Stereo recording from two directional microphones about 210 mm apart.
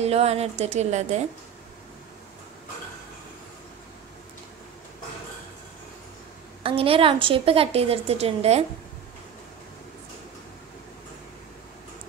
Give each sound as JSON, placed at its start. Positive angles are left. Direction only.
{"t": 0.0, "sound": "a woman's voice", "side_deg": -30}
{"t": 6.6, "sound": "a woman's voice", "side_deg": -25}